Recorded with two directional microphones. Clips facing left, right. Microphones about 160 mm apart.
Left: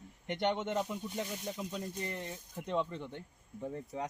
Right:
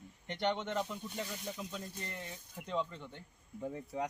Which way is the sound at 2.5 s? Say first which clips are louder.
Left 3 dB; 20° left (ahead or behind).